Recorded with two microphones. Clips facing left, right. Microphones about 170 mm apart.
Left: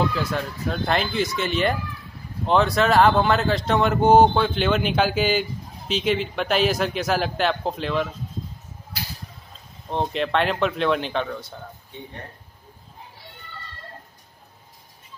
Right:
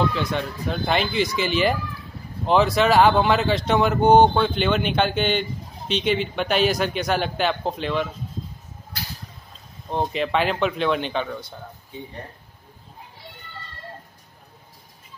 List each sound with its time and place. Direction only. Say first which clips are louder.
0.1 s speech: right 1 dB; 5° left (ahead or behind)
9.8 s speech: even; centre (ahead or behind)